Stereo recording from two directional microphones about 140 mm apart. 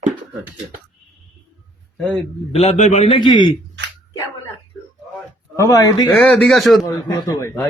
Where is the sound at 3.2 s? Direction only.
35° left (ahead or behind).